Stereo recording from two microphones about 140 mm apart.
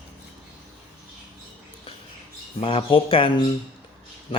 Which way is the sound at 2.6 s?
40° left (ahead or behind).